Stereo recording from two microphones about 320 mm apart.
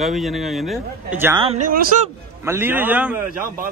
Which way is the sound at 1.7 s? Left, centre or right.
Right.